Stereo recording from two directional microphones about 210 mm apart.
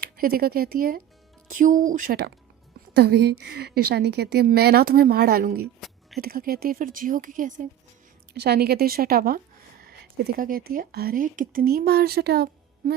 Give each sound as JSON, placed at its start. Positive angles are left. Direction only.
{"t": 0.0, "sound": "a woman's voice", "side_deg": -45}
{"t": 8.4, "sound": "a woman's voice", "side_deg": -50}